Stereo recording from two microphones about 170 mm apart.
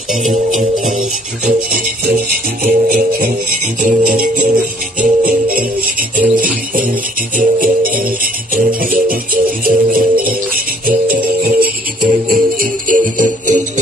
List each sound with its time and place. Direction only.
1.4 s music: 55° right (ahead or behind)